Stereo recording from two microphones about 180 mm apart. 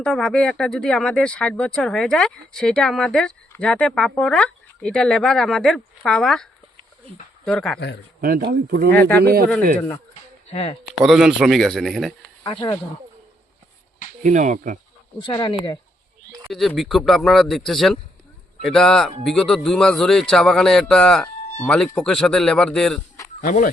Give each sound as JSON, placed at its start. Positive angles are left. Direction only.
{"t": 0.0, "sound": "speech", "side_deg": 0}
{"t": 8.2, "sound": "speech", "side_deg": -60}
{"t": 8.9, "sound": "speech", "side_deg": 10}
{"t": 10.5, "sound": "speech", "side_deg": 30}
{"t": 11.0, "sound": "speech", "side_deg": 0}
{"t": 12.4, "sound": "speech", "side_deg": 20}
{"t": 14.2, "sound": "speech", "side_deg": -45}
{"t": 15.2, "sound": "speech", "side_deg": 25}
{"t": 16.5, "sound": "speech", "side_deg": 0}
{"t": 23.4, "sound": "speech", "side_deg": 50}